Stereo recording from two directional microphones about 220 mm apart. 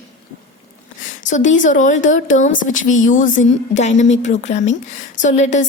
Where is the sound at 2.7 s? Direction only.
60° left (ahead or behind).